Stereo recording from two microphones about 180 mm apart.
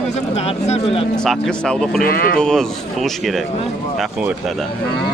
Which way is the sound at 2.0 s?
55° left (ahead or behind).